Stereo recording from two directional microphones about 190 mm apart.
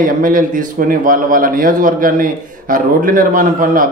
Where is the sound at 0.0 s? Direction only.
45° right (ahead or behind).